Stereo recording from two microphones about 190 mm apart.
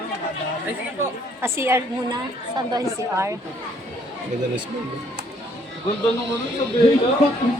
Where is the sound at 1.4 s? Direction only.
15° right (ahead or behind).